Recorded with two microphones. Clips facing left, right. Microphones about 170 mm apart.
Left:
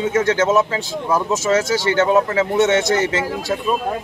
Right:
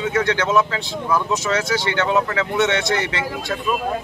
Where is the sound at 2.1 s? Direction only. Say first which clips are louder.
Left 4 dB; 25° left (ahead or behind).